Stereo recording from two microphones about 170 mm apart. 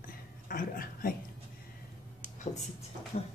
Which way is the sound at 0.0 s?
55° left (ahead or behind).